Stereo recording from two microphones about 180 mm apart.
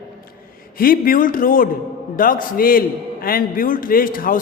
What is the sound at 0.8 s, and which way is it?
A man's voice, 50° left (ahead or behind).